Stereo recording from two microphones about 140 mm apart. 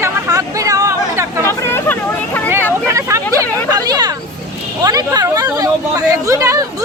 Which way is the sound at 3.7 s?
30° right (ahead or behind).